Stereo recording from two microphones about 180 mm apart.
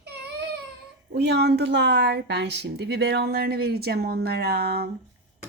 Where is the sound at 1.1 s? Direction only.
65° right (ahead or behind).